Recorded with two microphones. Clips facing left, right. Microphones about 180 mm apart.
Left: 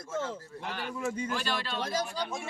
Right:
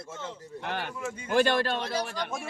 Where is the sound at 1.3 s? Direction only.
55° right (ahead or behind).